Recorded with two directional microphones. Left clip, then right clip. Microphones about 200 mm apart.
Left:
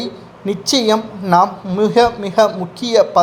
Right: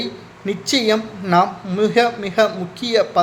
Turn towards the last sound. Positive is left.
turn(degrees=10)  # may be behind; listen again after turning